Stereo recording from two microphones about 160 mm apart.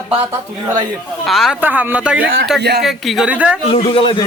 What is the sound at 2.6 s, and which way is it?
Speech, 90° right.